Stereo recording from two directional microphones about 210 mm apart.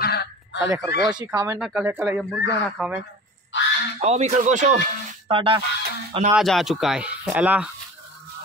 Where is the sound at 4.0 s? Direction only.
30° right (ahead or behind).